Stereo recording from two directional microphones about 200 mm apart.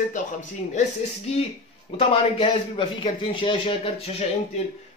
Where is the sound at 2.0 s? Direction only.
25° left (ahead or behind).